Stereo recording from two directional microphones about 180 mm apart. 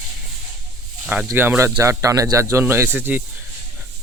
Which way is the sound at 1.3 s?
15° right (ahead or behind).